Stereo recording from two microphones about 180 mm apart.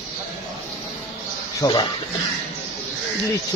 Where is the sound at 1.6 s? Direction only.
25° left (ahead or behind).